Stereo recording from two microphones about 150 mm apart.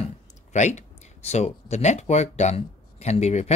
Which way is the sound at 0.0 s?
50° left (ahead or behind).